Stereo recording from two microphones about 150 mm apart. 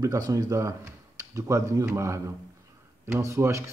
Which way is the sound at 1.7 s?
20° right (ahead or behind).